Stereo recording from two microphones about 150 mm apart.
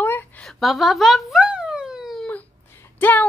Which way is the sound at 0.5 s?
Centre (ahead or behind).